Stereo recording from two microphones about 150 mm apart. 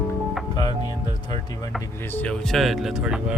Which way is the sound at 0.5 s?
25° left (ahead or behind).